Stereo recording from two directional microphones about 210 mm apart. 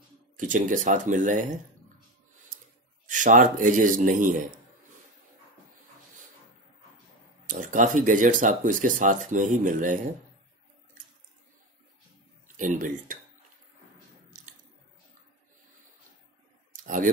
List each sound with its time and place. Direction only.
0.4 s speech: 40° right (ahead or behind)
3.1 s speech: 35° right (ahead or behind)
7.4 s speech: 40° right (ahead or behind)
12.4 s speech: 40° right (ahead or behind)
14.3 s squish: 40° right (ahead or behind)
16.7 s a sound: 40° right (ahead or behind)